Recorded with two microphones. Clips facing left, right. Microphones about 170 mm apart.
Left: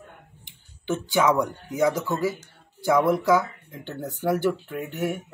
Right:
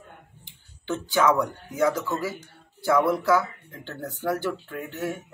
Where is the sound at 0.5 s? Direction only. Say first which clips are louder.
Left 2 dB; 15° left (ahead or behind).